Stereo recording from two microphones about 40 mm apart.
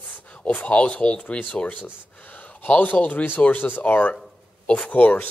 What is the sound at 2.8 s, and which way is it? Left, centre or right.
Speech, left.